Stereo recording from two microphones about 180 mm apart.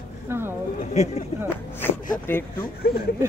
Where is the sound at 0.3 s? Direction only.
15° right (ahead or behind).